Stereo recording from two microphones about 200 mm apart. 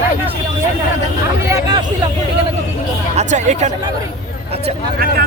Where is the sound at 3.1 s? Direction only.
35° right (ahead or behind).